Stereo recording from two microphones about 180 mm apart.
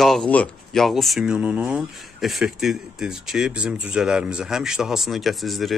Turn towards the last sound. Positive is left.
turn(degrees=0)  # may be behind; listen again after turning